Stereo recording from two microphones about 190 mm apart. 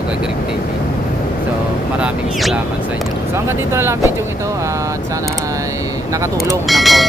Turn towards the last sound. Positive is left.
turn(degrees=0)  # may be behind; listen again after turning